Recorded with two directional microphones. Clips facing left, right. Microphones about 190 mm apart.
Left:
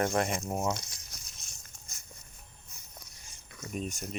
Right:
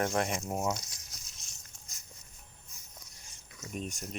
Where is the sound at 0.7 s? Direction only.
60° left (ahead or behind).